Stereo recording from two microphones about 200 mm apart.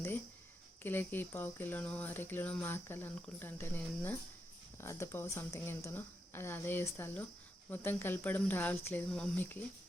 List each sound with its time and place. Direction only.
0.8 s speech: 10° left (ahead or behind)